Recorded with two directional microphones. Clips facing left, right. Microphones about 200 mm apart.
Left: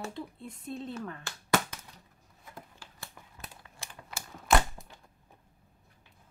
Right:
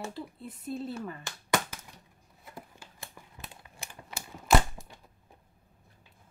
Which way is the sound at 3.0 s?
20° right (ahead or behind).